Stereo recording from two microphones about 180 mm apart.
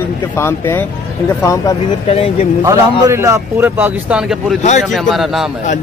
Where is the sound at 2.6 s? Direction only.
15° right (ahead or behind).